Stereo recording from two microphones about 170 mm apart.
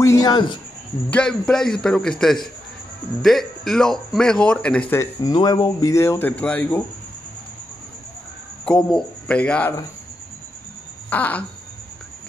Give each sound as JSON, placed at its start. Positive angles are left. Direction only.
{"t": 0.0, "sound": "speech", "side_deg": 20}
{"t": 1.1, "sound": "speech", "side_deg": 5}
{"t": 5.2, "sound": "speech", "side_deg": 25}
{"t": 8.6, "sound": "speech", "side_deg": 5}
{"t": 11.1, "sound": "speech", "side_deg": 10}